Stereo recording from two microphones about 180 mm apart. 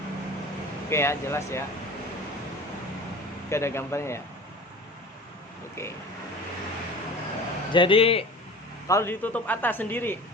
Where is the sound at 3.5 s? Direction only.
15° left (ahead or behind).